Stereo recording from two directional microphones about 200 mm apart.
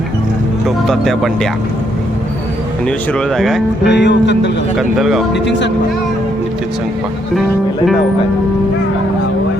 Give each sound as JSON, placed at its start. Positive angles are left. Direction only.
{"t": 0.9, "sound": "speech", "side_deg": 0}
{"t": 2.8, "sound": "speech", "side_deg": 5}
{"t": 3.8, "sound": "speech", "side_deg": 60}
{"t": 4.8, "sound": "speech", "side_deg": 0}
{"t": 5.3, "sound": "speech", "side_deg": 60}